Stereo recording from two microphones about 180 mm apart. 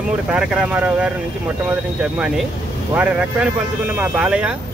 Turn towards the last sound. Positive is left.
turn(degrees=-5)  # may be behind; listen again after turning